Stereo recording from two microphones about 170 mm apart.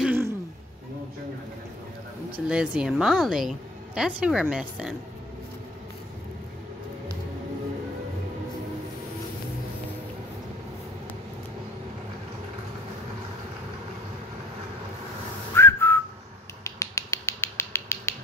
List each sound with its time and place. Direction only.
0.0 s throat clearing: 10° right (ahead or behind)
2.3 s a woman's voice: 5° right (ahead or behind)
15.5 s whistling: 15° left (ahead or behind)
16.6 s finger snapping: 15° left (ahead or behind)